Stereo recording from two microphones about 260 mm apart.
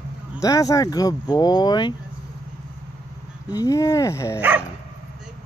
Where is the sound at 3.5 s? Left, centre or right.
Centre.